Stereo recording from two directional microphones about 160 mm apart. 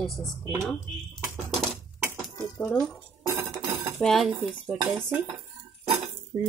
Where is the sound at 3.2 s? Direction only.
20° right (ahead or behind).